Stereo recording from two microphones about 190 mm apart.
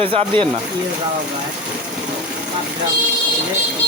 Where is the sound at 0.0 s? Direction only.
30° right (ahead or behind).